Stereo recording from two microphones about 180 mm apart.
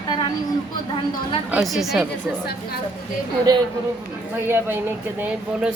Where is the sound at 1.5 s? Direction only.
Centre (ahead or behind).